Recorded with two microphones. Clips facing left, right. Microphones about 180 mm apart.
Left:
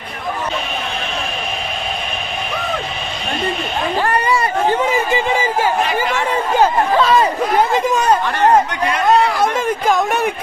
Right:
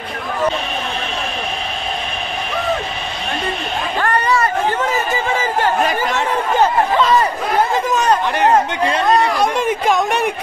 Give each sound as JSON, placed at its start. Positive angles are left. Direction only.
{"t": 4.0, "sound": "a sound", "side_deg": 10}
{"t": 7.0, "sound": "speech", "side_deg": 10}
{"t": 8.4, "sound": "speech", "side_deg": -25}
{"t": 9.4, "sound": "speech", "side_deg": 0}